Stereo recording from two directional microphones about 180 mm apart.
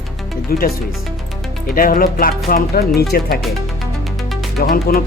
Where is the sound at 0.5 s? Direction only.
55° left (ahead or behind).